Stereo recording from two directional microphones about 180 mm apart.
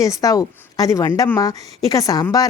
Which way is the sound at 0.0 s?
20° left (ahead or behind).